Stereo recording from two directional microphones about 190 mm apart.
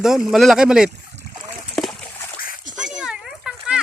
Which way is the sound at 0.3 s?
Centre (ahead or behind).